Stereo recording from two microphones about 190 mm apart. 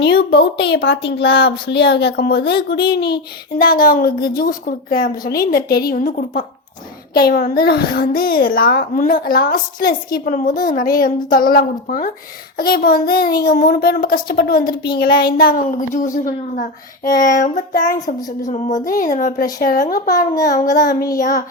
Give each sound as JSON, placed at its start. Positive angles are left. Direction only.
{"t": 0.0, "sound": "a child's voice", "side_deg": 65}
{"t": 20.3, "sound": "child singing", "side_deg": 20}
{"t": 21.2, "sound": "child singing", "side_deg": 40}